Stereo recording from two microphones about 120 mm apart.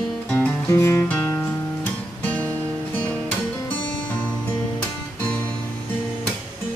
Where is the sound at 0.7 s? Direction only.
25° left (ahead or behind).